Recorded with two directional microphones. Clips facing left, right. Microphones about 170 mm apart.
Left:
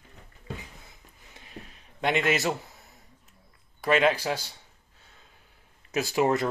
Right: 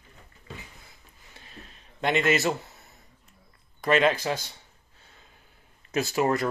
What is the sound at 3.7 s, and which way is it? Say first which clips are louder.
Speech: right 1 dB; 5° left (ahead or behind).